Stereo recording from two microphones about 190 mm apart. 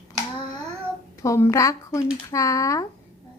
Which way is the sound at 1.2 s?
15° left (ahead or behind).